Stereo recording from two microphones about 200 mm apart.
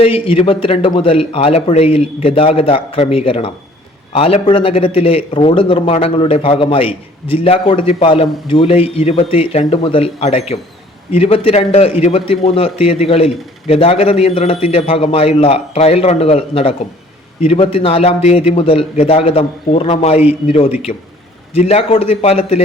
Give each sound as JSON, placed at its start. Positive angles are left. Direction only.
{"t": 0.0, "sound": "a man's voice", "side_deg": 30}